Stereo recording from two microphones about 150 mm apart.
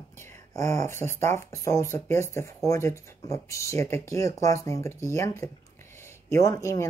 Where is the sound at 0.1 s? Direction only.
15° left (ahead or behind).